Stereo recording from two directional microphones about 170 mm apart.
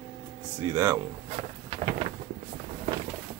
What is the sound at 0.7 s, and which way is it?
Speech, 20° right (ahead or behind).